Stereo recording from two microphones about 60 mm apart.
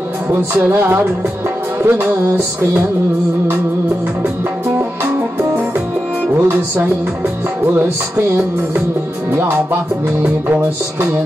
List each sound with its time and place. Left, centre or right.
0.3 s music: right
6.3 s music: right
9.3 s music: right